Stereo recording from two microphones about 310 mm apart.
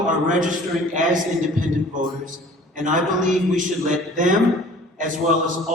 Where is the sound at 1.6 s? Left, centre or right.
Right.